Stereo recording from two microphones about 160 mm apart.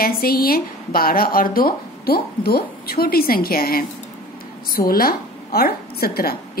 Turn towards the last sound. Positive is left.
turn(degrees=70)  # may be behind; listen again after turning